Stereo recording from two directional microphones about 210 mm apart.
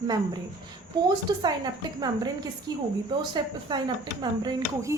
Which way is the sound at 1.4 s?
20° right (ahead or behind).